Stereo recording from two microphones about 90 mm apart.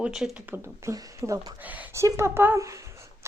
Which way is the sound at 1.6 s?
20° right (ahead or behind).